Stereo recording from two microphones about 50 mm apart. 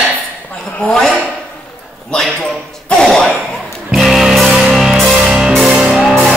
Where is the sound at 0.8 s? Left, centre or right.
Left.